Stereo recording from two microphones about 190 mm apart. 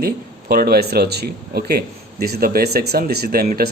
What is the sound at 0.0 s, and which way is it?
Speech, 55° right (ahead or behind).